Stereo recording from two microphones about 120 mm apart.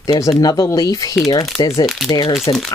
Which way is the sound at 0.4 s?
30° left (ahead or behind).